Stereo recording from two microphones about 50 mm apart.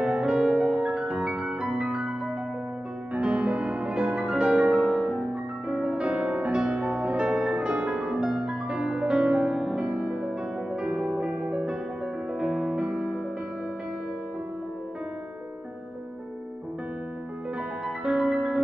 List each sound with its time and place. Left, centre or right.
0.0 s music: centre
3.3 s music: right
4.8 s music: centre
18.0 s music: right